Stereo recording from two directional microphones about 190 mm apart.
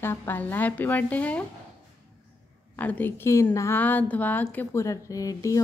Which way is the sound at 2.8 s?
10° left (ahead or behind).